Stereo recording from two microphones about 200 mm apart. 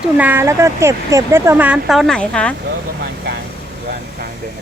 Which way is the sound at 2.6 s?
55° right (ahead or behind).